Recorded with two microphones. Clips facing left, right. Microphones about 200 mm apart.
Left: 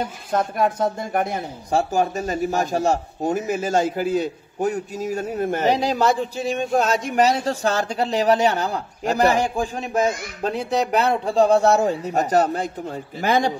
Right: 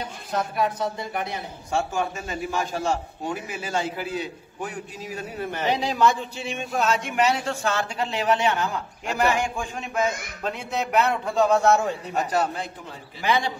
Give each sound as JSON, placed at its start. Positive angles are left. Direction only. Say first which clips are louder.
{"t": 0.0, "sound": "a man's voice", "louder": "left 5 dB", "side_deg": 50}